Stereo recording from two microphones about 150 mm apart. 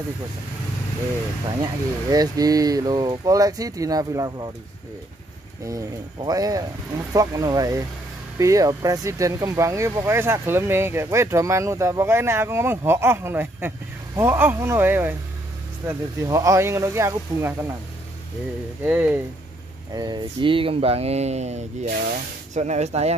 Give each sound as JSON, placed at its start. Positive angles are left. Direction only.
{"t": 1.6, "sound": "speech", "side_deg": -25}
{"t": 5.7, "sound": "speech", "side_deg": -25}
{"t": 18.9, "sound": "speech", "side_deg": -10}
{"t": 19.9, "sound": "speech", "side_deg": -25}
{"t": 21.8, "sound": "speech", "side_deg": -80}
{"t": 22.5, "sound": "speech", "side_deg": -50}